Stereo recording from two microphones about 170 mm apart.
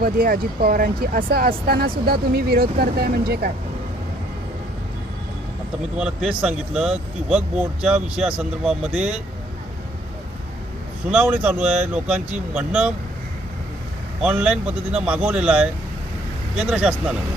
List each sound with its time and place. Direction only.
0.0 s speech: 60° right (ahead or behind)
6.0 s speech: 5° right (ahead or behind)
11.1 s speech: 10° right (ahead or behind)
14.2 s speech: 5° right (ahead or behind)